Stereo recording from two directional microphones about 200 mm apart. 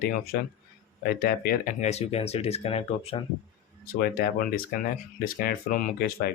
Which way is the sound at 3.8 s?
45° left (ahead or behind).